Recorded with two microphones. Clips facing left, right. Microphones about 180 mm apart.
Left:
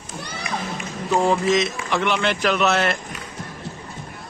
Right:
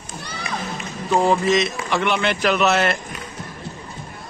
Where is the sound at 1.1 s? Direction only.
Centre (ahead or behind).